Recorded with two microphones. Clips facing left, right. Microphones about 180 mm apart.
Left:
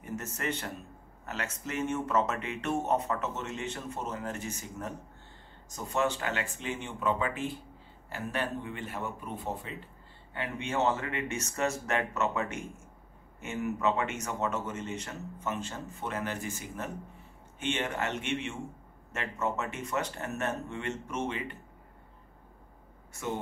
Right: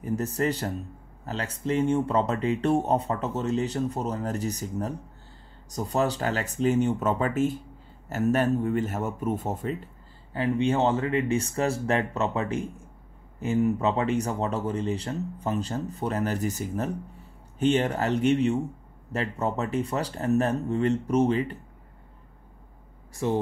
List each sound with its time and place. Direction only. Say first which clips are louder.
0.0 s speech: right 9 dB; 35° right (ahead or behind)
10.3 s speech: right 9 dB; 35° right (ahead or behind)
23.1 s speech: right 9 dB; 35° right (ahead or behind)